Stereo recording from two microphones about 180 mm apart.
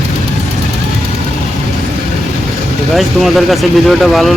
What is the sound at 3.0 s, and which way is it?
Speech, centre (ahead or behind).